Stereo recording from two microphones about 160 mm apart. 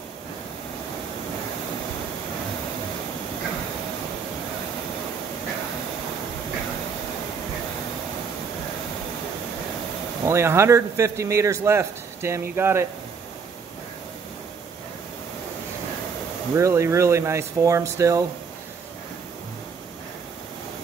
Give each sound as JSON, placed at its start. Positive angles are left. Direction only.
{"t": 10.2, "sound": "a man's voice", "side_deg": -15}
{"t": 16.5, "sound": "a man's voice", "side_deg": -20}